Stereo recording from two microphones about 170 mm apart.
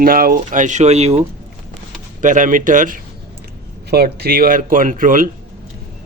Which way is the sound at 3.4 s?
65° right (ahead or behind).